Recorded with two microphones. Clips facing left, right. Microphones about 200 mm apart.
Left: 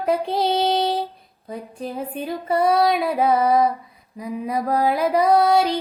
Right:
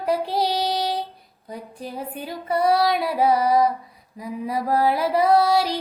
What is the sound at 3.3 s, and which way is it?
Female singing, 55° left (ahead or behind).